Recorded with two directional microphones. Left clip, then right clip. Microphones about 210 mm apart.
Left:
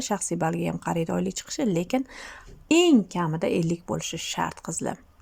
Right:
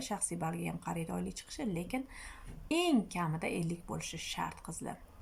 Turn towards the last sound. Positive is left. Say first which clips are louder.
# left 12 dB
turn(degrees=45)  # may be behind; listen again after turning